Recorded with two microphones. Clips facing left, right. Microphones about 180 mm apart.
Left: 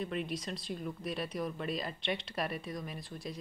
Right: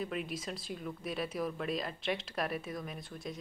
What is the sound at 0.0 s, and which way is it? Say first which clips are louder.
Speech: left 1 dB; centre (ahead or behind).